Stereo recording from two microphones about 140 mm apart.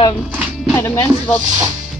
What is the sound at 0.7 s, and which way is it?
Speech, 20° left (ahead or behind).